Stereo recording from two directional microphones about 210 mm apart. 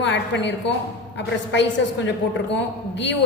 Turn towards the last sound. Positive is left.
turn(degrees=55)  # may be behind; listen again after turning